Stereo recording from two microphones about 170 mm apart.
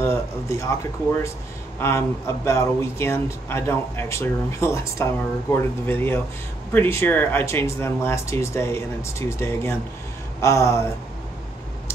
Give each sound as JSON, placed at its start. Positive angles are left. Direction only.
{"t": 0.0, "sound": "speech", "side_deg": 15}
{"t": 1.8, "sound": "speech", "side_deg": 15}